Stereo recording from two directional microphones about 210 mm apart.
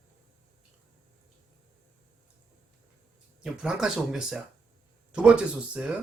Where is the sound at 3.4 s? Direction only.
Centre (ahead or behind).